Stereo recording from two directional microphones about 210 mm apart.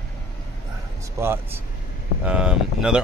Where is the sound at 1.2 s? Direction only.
10° right (ahead or behind).